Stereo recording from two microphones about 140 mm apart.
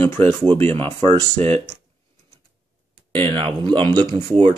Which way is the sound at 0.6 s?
45° right (ahead or behind).